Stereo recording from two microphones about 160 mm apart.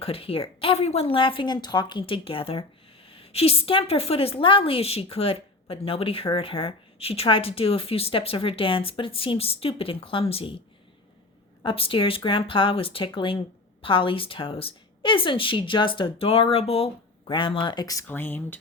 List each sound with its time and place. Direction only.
0.0 s a woman's voice: 35° left (ahead or behind)
11.6 s a woman's voice: 35° left (ahead or behind)
18.0 s speech: 10° left (ahead or behind)